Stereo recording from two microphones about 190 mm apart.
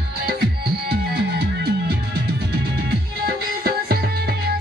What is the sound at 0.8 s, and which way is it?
Music, 55° right (ahead or behind).